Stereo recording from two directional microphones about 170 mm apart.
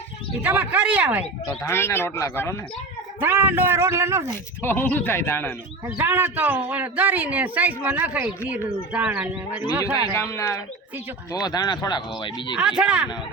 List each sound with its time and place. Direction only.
0.4 s speech: 10° right (ahead or behind)
1.5 s a man's voice: 15° left (ahead or behind)
3.2 s speech: 10° right (ahead or behind)
4.6 s a man's voice: 10° left (ahead or behind)
5.8 s speech: 15° right (ahead or behind)
10.2 s a man's voice: 15° left (ahead or behind)
12.5 s speech: 5° right (ahead or behind)